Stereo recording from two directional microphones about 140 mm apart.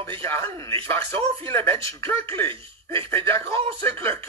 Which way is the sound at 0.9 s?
20° left (ahead or behind).